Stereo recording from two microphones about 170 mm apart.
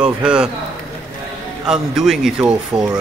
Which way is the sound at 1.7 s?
5° right (ahead or behind).